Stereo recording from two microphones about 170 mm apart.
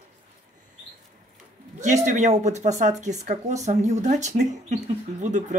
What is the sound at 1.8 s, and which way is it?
Speech, 45° right (ahead or behind).